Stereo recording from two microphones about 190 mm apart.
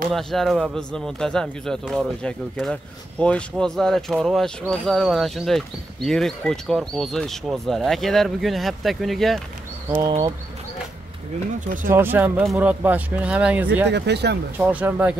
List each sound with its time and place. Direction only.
0.1 s speech: centre (ahead or behind)
11.6 s speech: 45° right (ahead or behind)
11.9 s speech: 10° right (ahead or behind)
13.8 s speech: 65° right (ahead or behind)
14.6 s speech: 10° right (ahead or behind)